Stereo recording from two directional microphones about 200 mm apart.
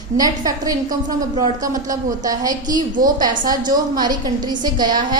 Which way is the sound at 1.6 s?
15° right (ahead or behind).